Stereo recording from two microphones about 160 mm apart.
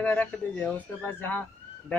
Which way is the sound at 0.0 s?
10° left (ahead or behind).